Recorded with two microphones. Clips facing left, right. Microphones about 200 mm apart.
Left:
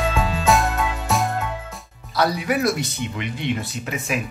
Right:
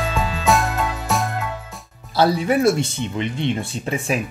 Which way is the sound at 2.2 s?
30° right (ahead or behind).